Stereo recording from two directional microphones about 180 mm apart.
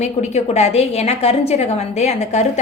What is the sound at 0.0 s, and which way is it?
A woman's voice, 40° left (ahead or behind).